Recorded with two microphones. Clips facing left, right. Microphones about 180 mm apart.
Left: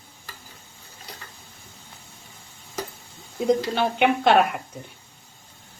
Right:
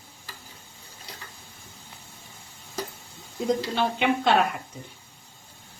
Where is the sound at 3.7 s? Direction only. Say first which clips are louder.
Left 3 dB; 60° left (ahead or behind).